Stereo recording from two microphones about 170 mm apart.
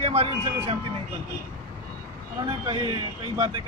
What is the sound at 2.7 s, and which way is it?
Speech, 25° right (ahead or behind).